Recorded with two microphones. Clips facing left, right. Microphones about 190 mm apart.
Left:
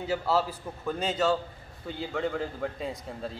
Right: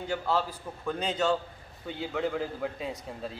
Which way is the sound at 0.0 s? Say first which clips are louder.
Left 2 dB; 5° left (ahead or behind).